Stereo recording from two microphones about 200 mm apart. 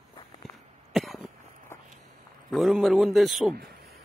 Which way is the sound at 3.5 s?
50° right (ahead or behind).